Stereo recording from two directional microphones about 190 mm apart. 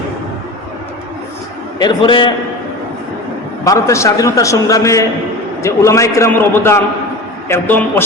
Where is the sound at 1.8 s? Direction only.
25° left (ahead or behind).